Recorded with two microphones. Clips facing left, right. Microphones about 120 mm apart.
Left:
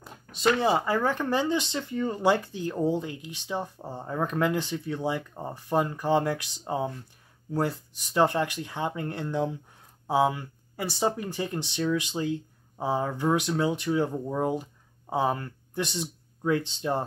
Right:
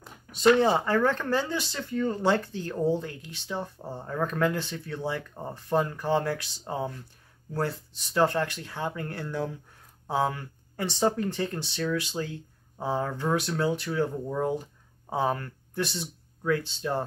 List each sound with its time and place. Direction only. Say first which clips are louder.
0.0 s speech: right 4 dB; 5° left (ahead or behind)